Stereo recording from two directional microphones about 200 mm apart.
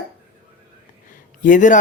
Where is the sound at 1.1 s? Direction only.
40° left (ahead or behind).